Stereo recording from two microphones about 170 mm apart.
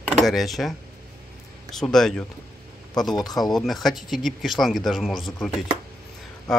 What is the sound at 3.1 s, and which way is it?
Speech, 25° left (ahead or behind).